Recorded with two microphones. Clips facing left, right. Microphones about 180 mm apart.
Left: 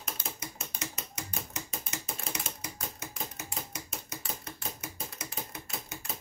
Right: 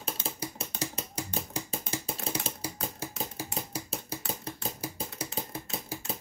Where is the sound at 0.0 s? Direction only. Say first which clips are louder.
Right 5 dB; 30° right (ahead or behind).